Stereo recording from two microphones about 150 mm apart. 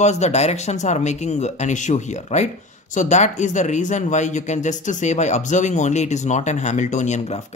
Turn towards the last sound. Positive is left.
turn(degrees=50)  # may be behind; listen again after turning